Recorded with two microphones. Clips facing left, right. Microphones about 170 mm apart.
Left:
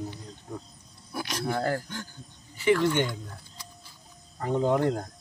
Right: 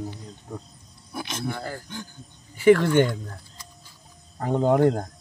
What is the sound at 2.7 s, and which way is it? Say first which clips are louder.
Speech: right 6 dB; 50° right (ahead or behind).